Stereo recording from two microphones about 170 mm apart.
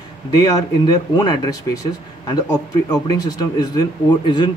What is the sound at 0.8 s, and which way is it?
Speech, 25° left (ahead or behind).